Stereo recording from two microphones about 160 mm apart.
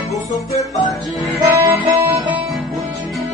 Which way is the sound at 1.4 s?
25° right (ahead or behind).